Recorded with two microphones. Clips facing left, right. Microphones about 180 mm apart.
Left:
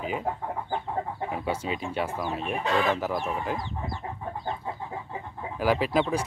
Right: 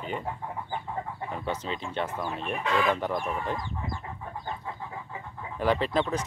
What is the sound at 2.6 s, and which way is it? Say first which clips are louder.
Speech: even; 30° left (ahead or behind).